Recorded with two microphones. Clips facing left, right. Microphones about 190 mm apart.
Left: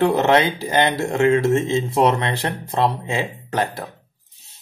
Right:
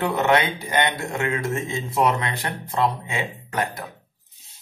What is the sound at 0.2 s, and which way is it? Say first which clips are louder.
Speech: left 4 dB; 30° left (ahead or behind).